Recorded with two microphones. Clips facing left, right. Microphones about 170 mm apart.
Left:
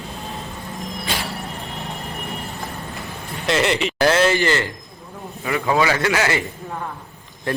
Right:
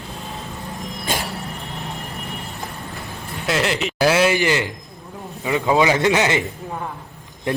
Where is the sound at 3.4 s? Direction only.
Centre (ahead or behind); by 6.4 s 20° right (ahead or behind).